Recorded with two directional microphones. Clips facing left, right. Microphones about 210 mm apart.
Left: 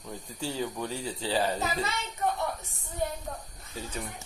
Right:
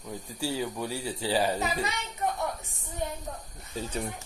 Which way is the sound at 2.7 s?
20° right (ahead or behind).